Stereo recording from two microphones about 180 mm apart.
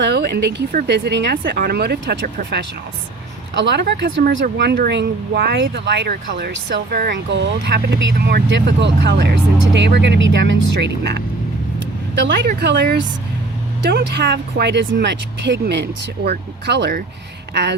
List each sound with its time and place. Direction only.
0.0 s a woman's voice: 65° right (ahead or behind)
3.5 s speech: 90° right
4.5 s speech: 65° right (ahead or behind)